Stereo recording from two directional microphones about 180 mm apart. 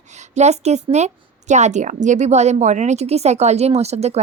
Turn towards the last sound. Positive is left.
turn(degrees=-35)  # may be behind; listen again after turning